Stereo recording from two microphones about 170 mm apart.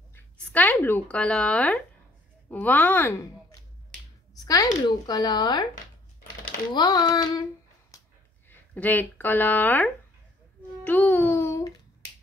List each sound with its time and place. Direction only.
0.1 s a sound: 10° left (ahead or behind)
0.7 s speech: 10° left (ahead or behind)
4.5 s speech: 20° left (ahead or behind)
6.7 s speech: 25° left (ahead or behind)
7.9 s a sound: 20° left (ahead or behind)
8.5 s speech: 10° left (ahead or behind)
10.8 s music: 10° left (ahead or behind)